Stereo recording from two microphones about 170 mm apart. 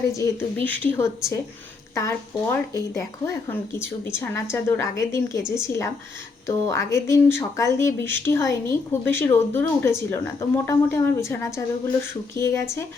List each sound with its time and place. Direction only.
0.2 s speech: 10° left (ahead or behind)